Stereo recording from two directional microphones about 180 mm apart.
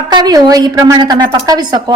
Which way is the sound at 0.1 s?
20° right (ahead or behind).